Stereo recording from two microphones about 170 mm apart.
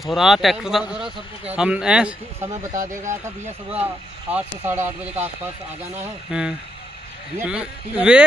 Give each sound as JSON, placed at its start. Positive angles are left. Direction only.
{"t": 0.0, "sound": "speech", "side_deg": 0}
{"t": 2.4, "sound": "speech", "side_deg": -20}
{"t": 6.3, "sound": "speech", "side_deg": -5}